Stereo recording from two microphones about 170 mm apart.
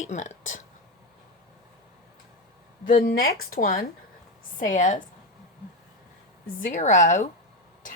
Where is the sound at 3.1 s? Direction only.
55° left (ahead or behind).